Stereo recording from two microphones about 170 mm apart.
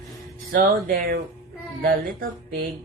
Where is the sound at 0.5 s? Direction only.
65° right (ahead or behind).